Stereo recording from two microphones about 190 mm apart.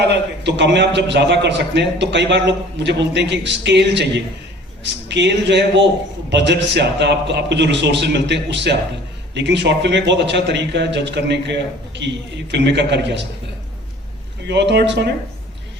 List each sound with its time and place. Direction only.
0.1 s a man's voice: 65° right (ahead or behind)
14.4 s a man's voice: 65° right (ahead or behind)